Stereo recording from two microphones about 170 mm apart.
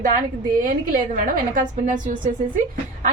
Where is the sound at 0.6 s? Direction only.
55° right (ahead or behind).